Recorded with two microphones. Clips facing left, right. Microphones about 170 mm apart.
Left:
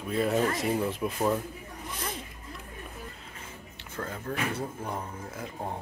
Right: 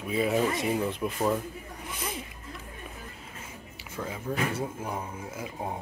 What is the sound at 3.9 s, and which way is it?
Speech, 5° right (ahead or behind).